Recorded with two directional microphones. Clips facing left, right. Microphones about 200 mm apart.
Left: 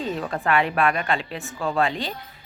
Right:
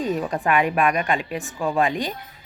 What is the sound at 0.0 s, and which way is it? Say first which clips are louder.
Speech: right 3 dB; 15° right (ahead or behind).